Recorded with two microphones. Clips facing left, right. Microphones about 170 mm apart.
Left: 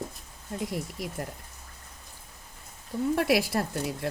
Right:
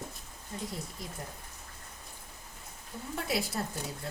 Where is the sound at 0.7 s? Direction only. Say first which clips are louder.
Left 7 dB; 85° left.